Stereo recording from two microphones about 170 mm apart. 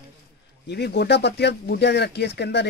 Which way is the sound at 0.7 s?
75° left (ahead or behind).